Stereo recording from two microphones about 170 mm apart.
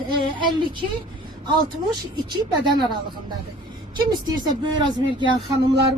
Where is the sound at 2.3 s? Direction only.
25° right (ahead or behind).